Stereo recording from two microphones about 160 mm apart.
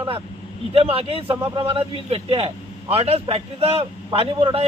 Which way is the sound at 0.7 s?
35° right (ahead or behind).